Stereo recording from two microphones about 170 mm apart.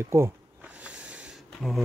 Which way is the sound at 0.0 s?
15° right (ahead or behind).